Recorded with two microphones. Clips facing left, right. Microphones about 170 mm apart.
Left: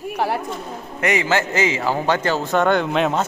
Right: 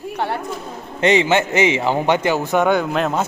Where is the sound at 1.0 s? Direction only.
25° right (ahead or behind); by 3.2 s centre (ahead or behind).